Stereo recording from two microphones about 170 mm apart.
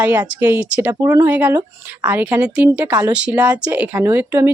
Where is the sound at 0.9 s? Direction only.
20° right (ahead or behind).